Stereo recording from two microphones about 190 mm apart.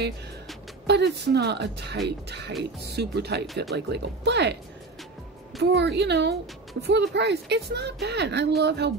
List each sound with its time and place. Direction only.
0.8 s a woman's voice: 60° right (ahead or behind)
5.6 s a woman's voice: 60° right (ahead or behind)